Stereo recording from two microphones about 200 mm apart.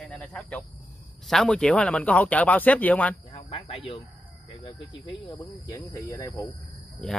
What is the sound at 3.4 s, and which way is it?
Speech, 25° left (ahead or behind).